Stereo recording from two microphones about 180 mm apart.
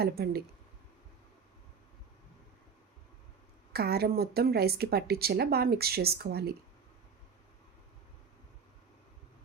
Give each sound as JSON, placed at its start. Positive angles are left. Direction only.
{"t": 0.0, "sound": "speech", "side_deg": -60}
{"t": 3.7, "sound": "speech", "side_deg": -60}